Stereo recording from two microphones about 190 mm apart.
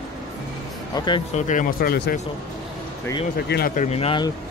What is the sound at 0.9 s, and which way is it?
Speech, 25° left (ahead or behind).